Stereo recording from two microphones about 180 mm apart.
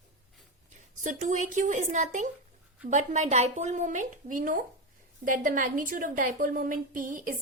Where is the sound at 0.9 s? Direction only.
45° right (ahead or behind).